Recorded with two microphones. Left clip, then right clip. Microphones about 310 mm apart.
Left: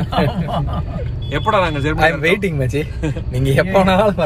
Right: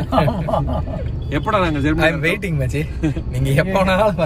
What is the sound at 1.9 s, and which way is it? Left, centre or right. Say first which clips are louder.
A man's voice: left 5 dB; centre.